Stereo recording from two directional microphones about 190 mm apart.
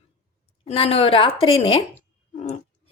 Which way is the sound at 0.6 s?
30° left (ahead or behind).